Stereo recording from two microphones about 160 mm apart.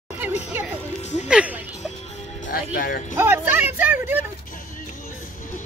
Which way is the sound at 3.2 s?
15° right (ahead or behind).